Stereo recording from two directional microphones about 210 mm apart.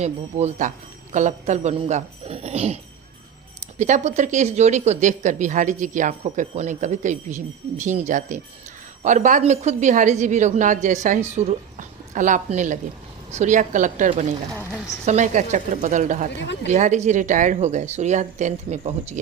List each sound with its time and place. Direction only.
0.0 s speech: 30° right (ahead or behind)
3.8 s a woman's voice: 35° right (ahead or behind)
16.3 s speech: 55° left (ahead or behind)
16.6 s speech: 35° right (ahead or behind)